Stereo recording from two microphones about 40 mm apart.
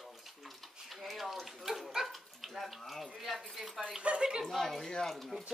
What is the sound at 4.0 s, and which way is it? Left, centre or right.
Speech, right.